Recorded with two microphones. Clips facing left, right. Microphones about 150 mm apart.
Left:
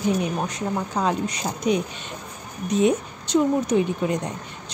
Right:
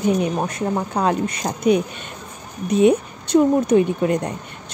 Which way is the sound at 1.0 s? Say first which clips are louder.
Right 3 dB; 55° right (ahead or behind).